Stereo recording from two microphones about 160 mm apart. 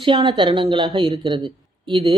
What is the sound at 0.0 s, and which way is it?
Speech, 30° right (ahead or behind).